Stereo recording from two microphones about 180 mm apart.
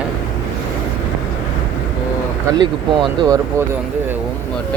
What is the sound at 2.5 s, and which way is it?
Speech, 20° right (ahead or behind).